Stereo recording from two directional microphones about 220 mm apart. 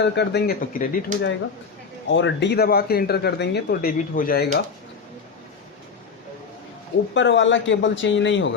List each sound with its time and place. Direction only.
0.0 s speech: 50° left (ahead or behind)
2.0 s speech: 55° left (ahead or behind); by 4.4 s 40° left (ahead or behind)
7.1 s speech: 55° left (ahead or behind)